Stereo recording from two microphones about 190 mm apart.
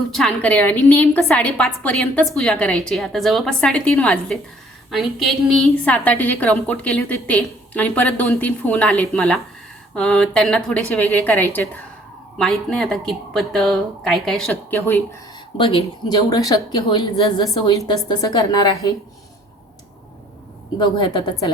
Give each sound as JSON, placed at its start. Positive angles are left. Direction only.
{"t": 0.1, "sound": "a woman's voice", "side_deg": 5}
{"t": 14.8, "sound": "a woman's voice", "side_deg": 15}
{"t": 15.5, "sound": "a woman's voice", "side_deg": 25}
{"t": 20.7, "sound": "a woman's voice", "side_deg": 25}